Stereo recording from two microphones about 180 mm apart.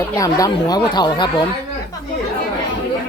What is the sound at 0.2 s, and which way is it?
Speech, 20° left (ahead or behind).